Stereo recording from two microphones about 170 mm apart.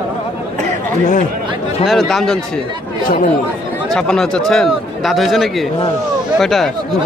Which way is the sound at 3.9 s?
5° left (ahead or behind).